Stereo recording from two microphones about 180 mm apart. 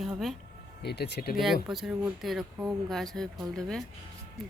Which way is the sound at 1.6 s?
5° right (ahead or behind).